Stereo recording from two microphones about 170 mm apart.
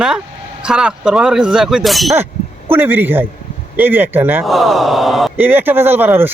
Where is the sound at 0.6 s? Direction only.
5° right (ahead or behind).